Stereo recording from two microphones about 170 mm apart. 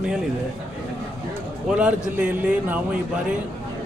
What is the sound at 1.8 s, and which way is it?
A man's voice, 10° right (ahead or behind).